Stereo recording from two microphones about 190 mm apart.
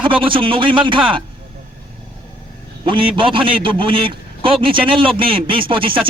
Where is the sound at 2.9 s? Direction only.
25° right (ahead or behind).